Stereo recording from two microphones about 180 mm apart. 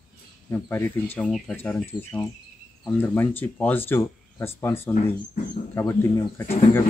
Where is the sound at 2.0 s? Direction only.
15° left (ahead or behind).